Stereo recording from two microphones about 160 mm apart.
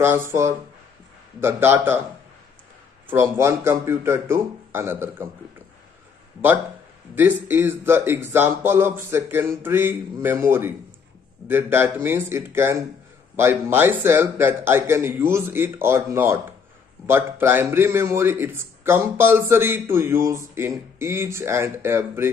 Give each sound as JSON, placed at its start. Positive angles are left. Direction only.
{"t": 0.0, "sound": "a man's voice", "side_deg": -15}
{"t": 3.1, "sound": "a man's voice", "side_deg": -15}
{"t": 7.2, "sound": "a man's voice", "side_deg": -10}